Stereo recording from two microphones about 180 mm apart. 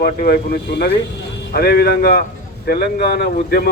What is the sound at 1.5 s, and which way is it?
A man's voice, 60° left (ahead or behind).